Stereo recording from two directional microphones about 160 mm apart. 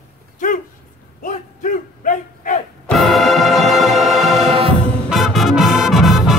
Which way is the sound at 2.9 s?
Centre (ahead or behind).